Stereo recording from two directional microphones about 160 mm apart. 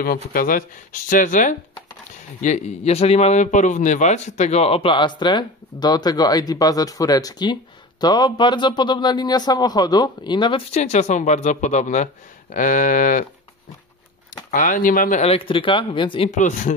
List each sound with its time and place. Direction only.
0.0 s speech: 65° left (ahead or behind); by 10.6 s 30° left (ahead or behind)
10.7 s speech: 45° left (ahead or behind)
14.5 s speech: 60° left (ahead or behind); by 16.3 s 30° left (ahead or behind)
16.3 s speech: 50° left (ahead or behind)